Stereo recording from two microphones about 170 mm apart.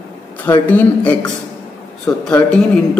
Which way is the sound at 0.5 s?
10° left (ahead or behind).